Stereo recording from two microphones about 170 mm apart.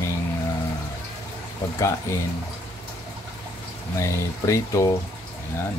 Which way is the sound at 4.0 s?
15° left (ahead or behind).